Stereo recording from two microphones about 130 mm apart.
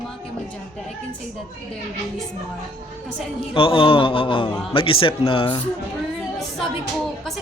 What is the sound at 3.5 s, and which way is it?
Speech, 40° left (ahead or behind).